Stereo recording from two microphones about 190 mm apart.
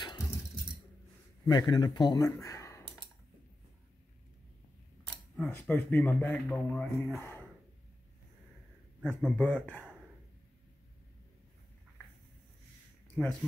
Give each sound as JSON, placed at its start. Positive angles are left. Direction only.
{"t": 1.4, "sound": "speech", "side_deg": 20}
{"t": 5.0, "sound": "speech", "side_deg": 5}
{"t": 9.0, "sound": "speech", "side_deg": 5}
{"t": 13.2, "sound": "speech", "side_deg": 0}